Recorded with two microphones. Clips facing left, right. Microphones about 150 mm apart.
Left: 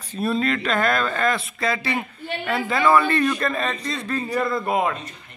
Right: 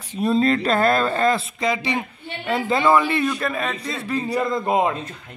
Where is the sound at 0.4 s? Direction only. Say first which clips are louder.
Right 5 dB; 35° right (ahead or behind).